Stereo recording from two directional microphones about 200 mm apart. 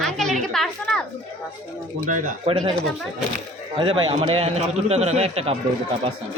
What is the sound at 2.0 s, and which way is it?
Speech, 40° right (ahead or behind).